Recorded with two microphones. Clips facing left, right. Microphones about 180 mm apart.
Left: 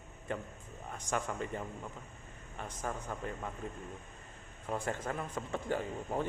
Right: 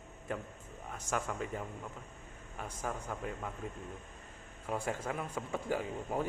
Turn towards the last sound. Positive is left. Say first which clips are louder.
# even
turn(degrees=-5)  # may be behind; listen again after turning